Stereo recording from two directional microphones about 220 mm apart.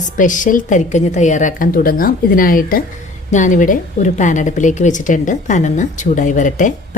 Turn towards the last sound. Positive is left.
turn(degrees=35)  # may be behind; listen again after turning